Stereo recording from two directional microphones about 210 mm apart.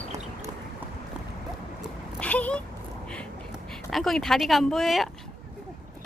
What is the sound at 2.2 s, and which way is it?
Speech, 5° left (ahead or behind).